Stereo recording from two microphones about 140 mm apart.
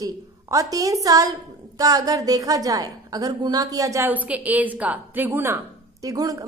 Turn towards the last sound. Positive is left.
turn(degrees=-25)  # may be behind; listen again after turning